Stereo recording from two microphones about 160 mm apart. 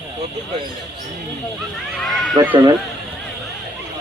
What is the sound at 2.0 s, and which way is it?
Speech, centre (ahead or behind).